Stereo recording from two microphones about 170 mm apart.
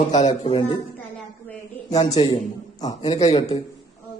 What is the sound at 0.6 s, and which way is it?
Mantra, 30° left (ahead or behind).